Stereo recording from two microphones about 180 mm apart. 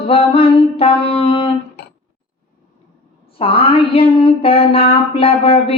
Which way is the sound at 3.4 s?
30° left (ahead or behind).